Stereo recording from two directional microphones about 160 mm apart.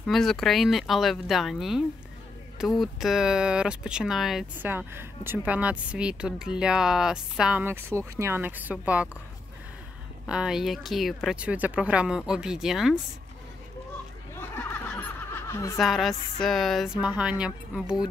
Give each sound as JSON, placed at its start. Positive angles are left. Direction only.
{"t": 0.0, "sound": "speech", "side_deg": 0}
{"t": 10.2, "sound": "speech", "side_deg": -5}
{"t": 14.3, "sound": "snicker", "side_deg": 10}
{"t": 15.8, "sound": "speech", "side_deg": 0}